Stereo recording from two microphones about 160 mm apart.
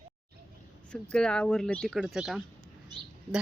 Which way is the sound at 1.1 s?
5° left (ahead or behind).